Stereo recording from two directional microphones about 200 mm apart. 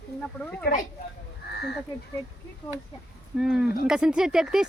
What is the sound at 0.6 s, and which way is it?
Speech, 55° left (ahead or behind).